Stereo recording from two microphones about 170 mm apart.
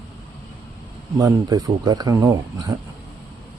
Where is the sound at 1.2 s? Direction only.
20° right (ahead or behind).